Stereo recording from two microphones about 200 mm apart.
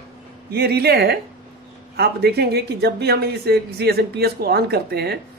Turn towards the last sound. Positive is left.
turn(degrees=-55)  # may be behind; listen again after turning